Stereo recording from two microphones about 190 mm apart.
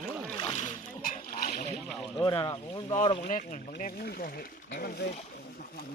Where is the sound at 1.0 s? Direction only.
45° left (ahead or behind).